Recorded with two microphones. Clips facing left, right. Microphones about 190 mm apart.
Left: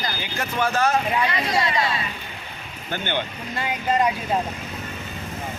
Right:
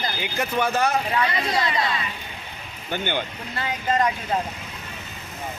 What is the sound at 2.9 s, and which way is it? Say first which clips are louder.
Speech: even; 15° right (ahead or behind).